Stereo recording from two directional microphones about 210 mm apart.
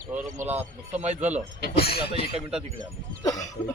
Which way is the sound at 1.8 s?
50° left (ahead or behind).